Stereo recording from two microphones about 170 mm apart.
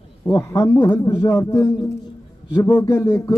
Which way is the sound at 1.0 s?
20° left (ahead or behind).